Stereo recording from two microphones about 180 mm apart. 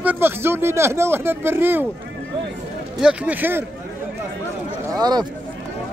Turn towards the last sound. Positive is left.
turn(degrees=-20)  # may be behind; listen again after turning